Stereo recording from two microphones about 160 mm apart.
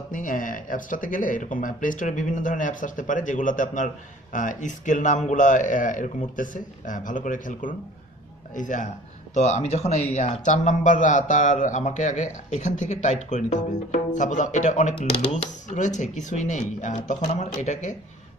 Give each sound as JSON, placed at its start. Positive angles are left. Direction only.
{"t": 0.1, "sound": "a man's voice", "side_deg": 55}